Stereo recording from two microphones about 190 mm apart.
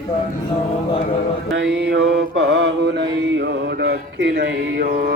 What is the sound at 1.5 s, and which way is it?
Mantra, 70° right (ahead or behind).